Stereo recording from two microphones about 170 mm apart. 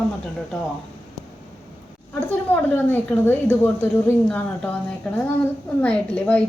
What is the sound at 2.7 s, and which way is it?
A woman's voice, 10° left (ahead or behind).